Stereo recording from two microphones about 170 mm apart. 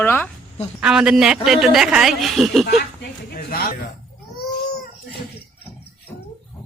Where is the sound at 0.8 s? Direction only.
5° right (ahead or behind).